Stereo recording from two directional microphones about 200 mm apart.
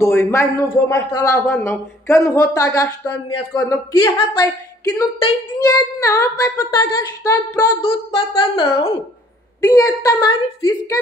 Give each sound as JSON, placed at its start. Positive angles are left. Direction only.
{"t": 0.0, "sound": "a man's voice", "side_deg": 15}